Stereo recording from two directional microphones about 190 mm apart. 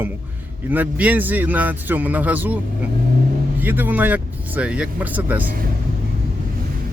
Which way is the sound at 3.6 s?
10° right (ahead or behind).